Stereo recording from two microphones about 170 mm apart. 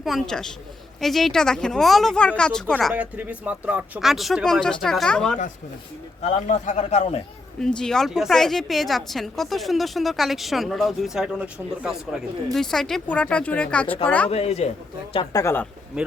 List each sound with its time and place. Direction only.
0.0 s a woman's voice: centre (ahead or behind)
2.9 s a woman's voice: 10° right (ahead or behind)
6.2 s a man's voice: 45° left (ahead or behind)
7.6 s a woman's voice: 5° left (ahead or behind)
14.3 s speech: 35° left (ahead or behind)
15.1 s speech: 25° left (ahead or behind)